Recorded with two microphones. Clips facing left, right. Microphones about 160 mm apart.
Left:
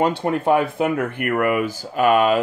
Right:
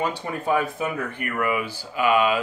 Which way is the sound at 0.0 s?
65° left (ahead or behind).